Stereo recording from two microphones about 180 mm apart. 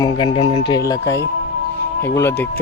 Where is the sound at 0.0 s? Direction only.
25° left (ahead or behind).